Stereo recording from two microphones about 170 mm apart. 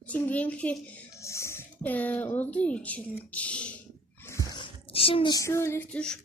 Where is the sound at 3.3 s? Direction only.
5° left (ahead or behind).